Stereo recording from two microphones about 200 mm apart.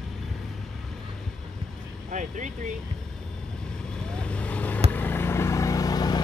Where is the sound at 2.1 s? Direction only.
40° right (ahead or behind).